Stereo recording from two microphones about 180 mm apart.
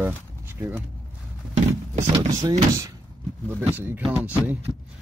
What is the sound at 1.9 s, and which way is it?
Speech, 35° right (ahead or behind).